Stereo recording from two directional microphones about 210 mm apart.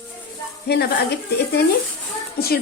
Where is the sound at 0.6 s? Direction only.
50° left (ahead or behind).